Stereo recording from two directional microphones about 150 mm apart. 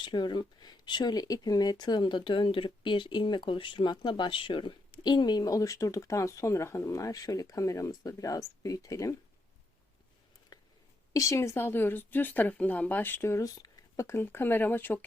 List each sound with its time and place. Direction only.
0.0 s speech: 30° left (ahead or behind)
11.1 s speech: 20° left (ahead or behind)